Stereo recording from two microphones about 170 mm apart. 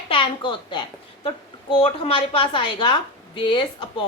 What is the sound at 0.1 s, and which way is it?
A woman's voice, 30° left (ahead or behind).